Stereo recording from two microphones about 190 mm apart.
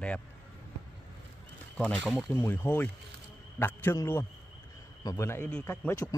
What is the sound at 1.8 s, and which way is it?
Speech, centre (ahead or behind).